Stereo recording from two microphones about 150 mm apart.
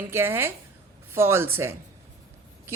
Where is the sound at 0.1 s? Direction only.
15° right (ahead or behind).